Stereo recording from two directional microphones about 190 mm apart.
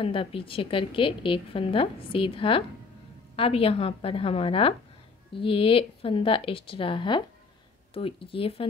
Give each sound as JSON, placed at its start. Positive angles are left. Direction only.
{"t": 0.0, "sound": "a woman's voice", "side_deg": 30}